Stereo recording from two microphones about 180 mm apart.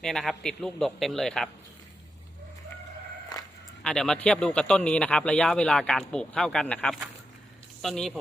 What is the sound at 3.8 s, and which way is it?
Speech, 5° left (ahead or behind).